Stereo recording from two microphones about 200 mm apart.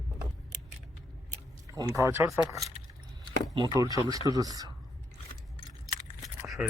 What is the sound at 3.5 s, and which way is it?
Speech, 20° right (ahead or behind).